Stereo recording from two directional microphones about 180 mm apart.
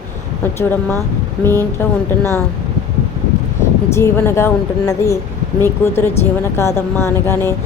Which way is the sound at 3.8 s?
15° left (ahead or behind).